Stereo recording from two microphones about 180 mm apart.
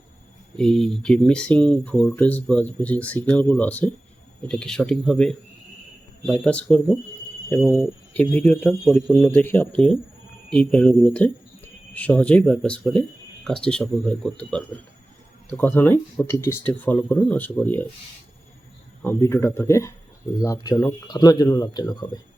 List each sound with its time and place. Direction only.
0.5 s speech: 5° left (ahead or behind)
9.1 s speech: 10° left (ahead or behind)
19.0 s speech: 15° left (ahead or behind)